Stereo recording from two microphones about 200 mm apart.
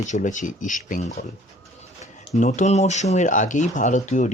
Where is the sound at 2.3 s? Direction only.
35° left (ahead or behind).